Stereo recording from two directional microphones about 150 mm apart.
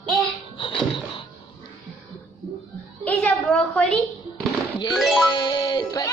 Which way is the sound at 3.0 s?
10° left (ahead or behind).